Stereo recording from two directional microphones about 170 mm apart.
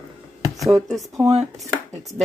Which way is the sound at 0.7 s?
Centre (ahead or behind).